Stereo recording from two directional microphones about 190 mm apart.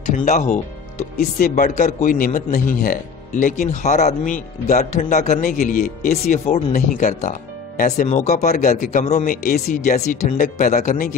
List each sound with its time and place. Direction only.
0.0 s a man's voice: 40° left (ahead or behind)